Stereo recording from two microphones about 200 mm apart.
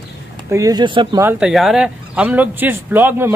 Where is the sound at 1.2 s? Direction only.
5° right (ahead or behind).